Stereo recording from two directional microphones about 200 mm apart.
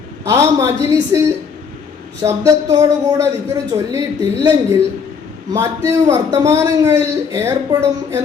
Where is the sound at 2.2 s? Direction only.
15° right (ahead or behind).